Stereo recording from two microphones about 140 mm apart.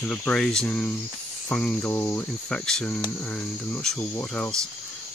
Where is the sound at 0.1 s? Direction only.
5° left (ahead or behind).